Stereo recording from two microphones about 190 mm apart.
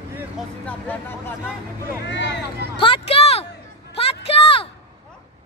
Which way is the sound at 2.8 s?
30° left (ahead or behind).